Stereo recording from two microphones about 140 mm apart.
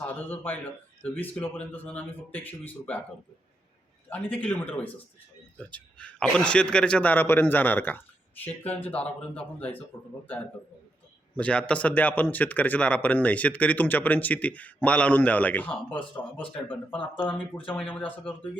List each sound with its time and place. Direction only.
0.0 s a man's voice: 10° left (ahead or behind)
4.1 s speech: 10° left (ahead or behind)
11.3 s speech: 10° left (ahead or behind)
16.4 s speech: 40° left (ahead or behind)
17.0 s speech: 10° left (ahead or behind)